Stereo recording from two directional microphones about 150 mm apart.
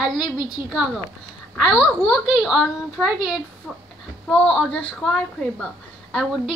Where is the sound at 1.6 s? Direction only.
10° left (ahead or behind).